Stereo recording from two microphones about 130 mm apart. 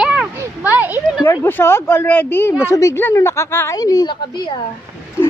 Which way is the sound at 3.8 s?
30° left (ahead or behind).